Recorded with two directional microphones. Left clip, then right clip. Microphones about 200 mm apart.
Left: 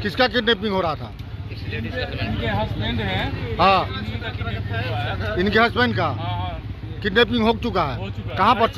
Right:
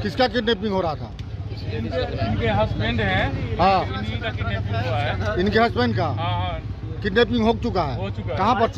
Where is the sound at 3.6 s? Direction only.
10° right (ahead or behind).